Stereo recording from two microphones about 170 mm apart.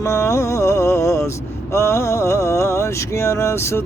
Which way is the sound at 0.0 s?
15° left (ahead or behind).